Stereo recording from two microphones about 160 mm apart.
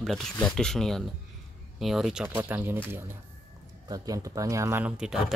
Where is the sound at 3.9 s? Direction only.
20° right (ahead or behind); by 5.2 s 5° right (ahead or behind).